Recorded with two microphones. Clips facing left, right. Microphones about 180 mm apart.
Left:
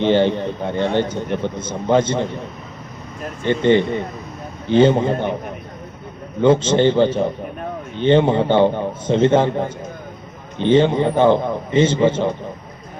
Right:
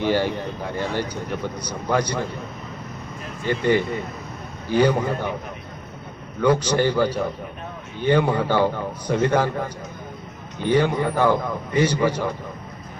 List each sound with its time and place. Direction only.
0.0 s a man's voice: 25° left (ahead or behind)
3.4 s a man's voice: 25° left (ahead or behind)
6.4 s a man's voice: 25° left (ahead or behind)